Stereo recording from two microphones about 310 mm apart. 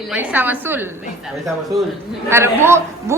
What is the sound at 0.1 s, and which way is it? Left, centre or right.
Speech, centre.